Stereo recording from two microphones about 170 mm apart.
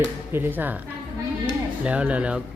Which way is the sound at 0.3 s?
10° right (ahead or behind).